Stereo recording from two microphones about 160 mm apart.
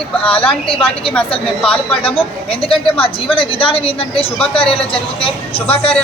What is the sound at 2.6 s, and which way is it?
A woman's voice, 35° left (ahead or behind).